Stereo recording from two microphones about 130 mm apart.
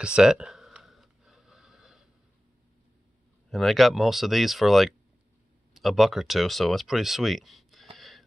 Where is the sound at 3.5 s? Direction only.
Centre (ahead or behind).